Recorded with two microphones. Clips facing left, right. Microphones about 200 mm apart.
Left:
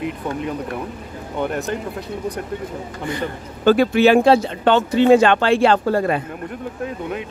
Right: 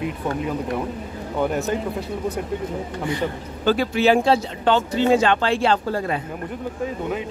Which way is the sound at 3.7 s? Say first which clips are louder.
Left 5 dB; 60° left (ahead or behind).